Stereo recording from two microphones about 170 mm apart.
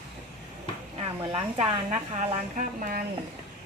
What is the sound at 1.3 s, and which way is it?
A woman's voice, 35° right (ahead or behind).